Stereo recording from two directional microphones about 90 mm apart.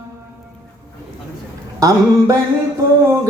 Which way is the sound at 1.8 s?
40° right (ahead or behind).